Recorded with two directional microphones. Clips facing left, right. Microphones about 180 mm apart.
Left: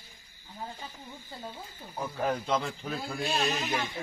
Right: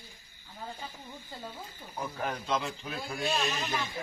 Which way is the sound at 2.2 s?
35° left (ahead or behind).